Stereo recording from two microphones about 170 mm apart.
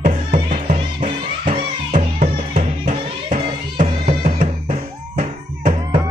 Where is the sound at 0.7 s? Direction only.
45° right (ahead or behind).